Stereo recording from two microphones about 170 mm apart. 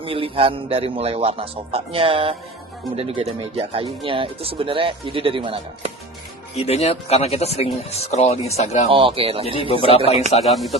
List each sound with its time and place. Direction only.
0.0 s speech: 30° right (ahead or behind)
6.6 s speech: 40° left (ahead or behind)
8.9 s speech: 30° right (ahead or behind)
9.6 s speech: 35° left (ahead or behind)
10.4 s speech: centre (ahead or behind)